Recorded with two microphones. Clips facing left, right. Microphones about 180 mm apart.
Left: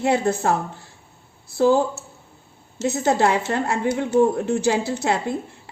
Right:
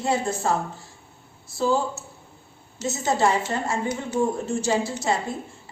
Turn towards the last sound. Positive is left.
turn(degrees=65)  # may be behind; listen again after turning